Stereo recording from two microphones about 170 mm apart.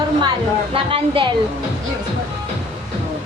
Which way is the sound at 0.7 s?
35° right (ahead or behind).